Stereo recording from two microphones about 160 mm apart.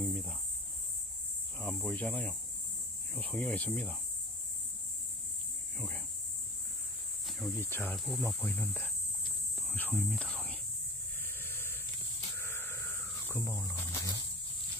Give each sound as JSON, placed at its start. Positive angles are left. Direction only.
{"t": 0.0, "sound": "speech", "side_deg": 0}
{"t": 1.9, "sound": "speech", "side_deg": 5}
{"t": 5.8, "sound": "a sound", "side_deg": 5}
{"t": 7.2, "sound": "cricket", "side_deg": 0}
{"t": 7.6, "sound": "speech", "side_deg": 15}
{"t": 7.9, "sound": "speech", "side_deg": 0}
{"t": 10.0, "sound": "whispering", "side_deg": 5}
{"t": 11.2, "sound": "a sound", "side_deg": 15}
{"t": 12.4, "sound": "insect", "side_deg": 15}